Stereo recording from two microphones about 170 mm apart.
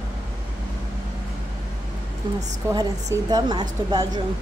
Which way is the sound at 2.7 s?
20° right (ahead or behind).